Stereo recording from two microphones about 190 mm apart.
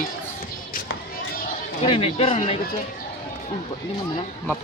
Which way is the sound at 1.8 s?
30° left (ahead or behind).